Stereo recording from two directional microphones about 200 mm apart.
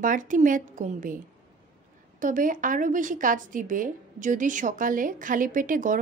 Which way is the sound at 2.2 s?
40° right (ahead or behind).